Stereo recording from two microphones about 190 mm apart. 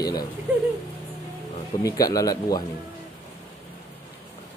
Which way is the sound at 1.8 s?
20° left (ahead or behind).